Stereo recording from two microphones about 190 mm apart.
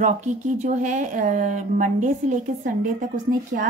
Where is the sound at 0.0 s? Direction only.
40° right (ahead or behind).